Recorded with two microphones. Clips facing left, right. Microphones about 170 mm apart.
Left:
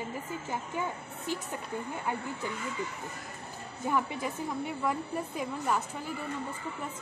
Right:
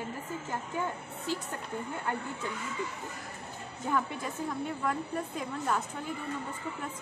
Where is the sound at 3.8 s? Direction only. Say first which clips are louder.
Left 1 dB; 10° left (ahead or behind).